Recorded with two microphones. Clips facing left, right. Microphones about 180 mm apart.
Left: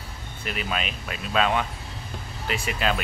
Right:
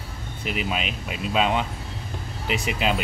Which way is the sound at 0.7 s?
15° right (ahead or behind).